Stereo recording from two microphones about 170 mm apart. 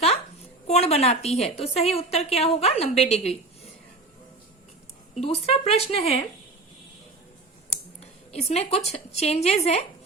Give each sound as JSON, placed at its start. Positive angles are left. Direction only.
{"t": 0.7, "sound": "a woman's voice", "side_deg": 40}
{"t": 5.1, "sound": "a woman's voice", "side_deg": 35}
{"t": 8.3, "sound": "a woman's voice", "side_deg": 40}